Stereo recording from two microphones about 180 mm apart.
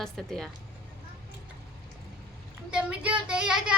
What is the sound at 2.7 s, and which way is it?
A woman's voice, 5° right (ahead or behind).